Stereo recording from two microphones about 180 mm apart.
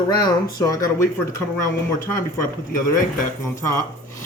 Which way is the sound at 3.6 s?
15° left (ahead or behind).